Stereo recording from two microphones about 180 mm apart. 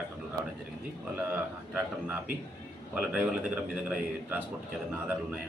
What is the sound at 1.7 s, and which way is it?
A man's voice, 10° right (ahead or behind).